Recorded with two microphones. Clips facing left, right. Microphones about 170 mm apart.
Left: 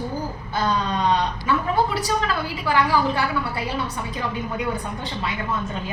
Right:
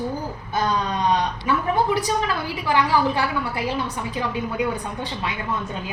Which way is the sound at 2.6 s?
15° right (ahead or behind).